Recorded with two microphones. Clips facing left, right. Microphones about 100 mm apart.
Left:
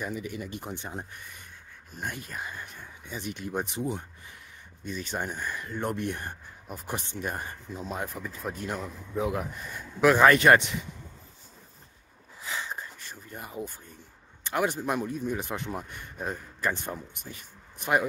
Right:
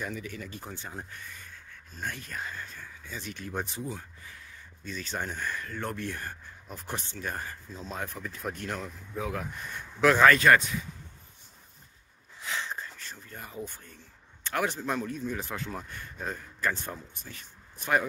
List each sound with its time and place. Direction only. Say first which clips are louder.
0.0 s speech: left 3 dB; 10° left (ahead or behind)
10.2 s speech: left 1 dB; 20° left (ahead or behind)
12.4 s a sound: even; 5° left (ahead or behind)
14.4 s speech: left 2 dB; 10° left (ahead or behind)